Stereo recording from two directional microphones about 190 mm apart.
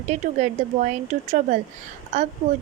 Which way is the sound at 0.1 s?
40° right (ahead or behind).